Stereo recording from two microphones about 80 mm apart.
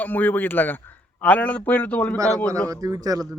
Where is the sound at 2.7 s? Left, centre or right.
Right.